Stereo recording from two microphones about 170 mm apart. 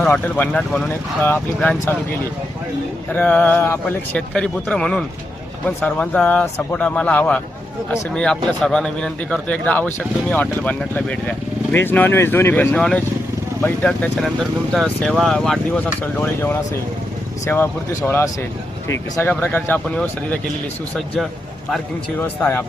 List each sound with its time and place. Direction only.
0.0 s speech: 10° left (ahead or behind)
3.1 s speech: 10° left (ahead or behind)
22.2 s speech: 15° left (ahead or behind)